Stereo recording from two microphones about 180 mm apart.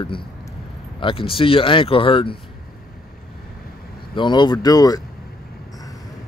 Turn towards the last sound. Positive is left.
turn(degrees=20)  # may be behind; listen again after turning